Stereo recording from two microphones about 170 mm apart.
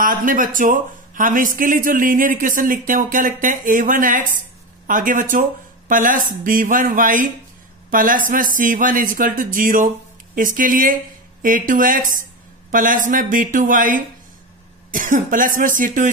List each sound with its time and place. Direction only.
0.0 s speech: 55° right (ahead or behind)